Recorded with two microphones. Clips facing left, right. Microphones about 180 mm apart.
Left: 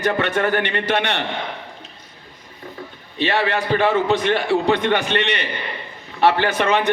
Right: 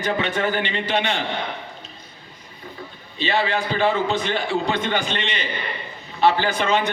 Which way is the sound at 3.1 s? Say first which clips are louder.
Left 2 dB; 65° left (ahead or behind).